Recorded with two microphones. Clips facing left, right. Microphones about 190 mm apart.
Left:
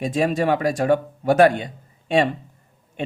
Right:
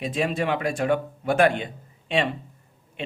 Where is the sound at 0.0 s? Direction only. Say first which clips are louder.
Left 5 dB; 45° left (ahead or behind).